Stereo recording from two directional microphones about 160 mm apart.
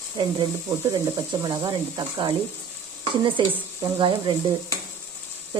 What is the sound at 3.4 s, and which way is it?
Speech, 30° right (ahead or behind).